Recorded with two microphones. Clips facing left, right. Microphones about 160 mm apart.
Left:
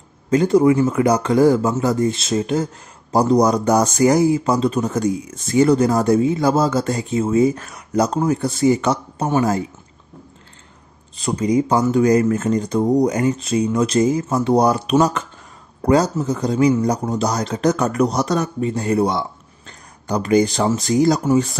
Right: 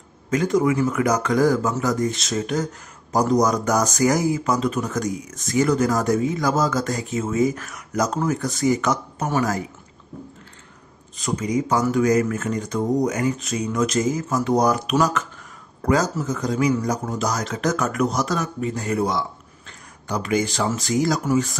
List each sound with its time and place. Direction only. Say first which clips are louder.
0.3 s speech: left 6 dB; 30° left (ahead or behind)
11.1 s speech: left 5 dB; 30° left (ahead or behind)